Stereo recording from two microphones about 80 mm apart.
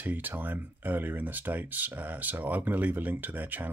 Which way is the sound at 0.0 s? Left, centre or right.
Right.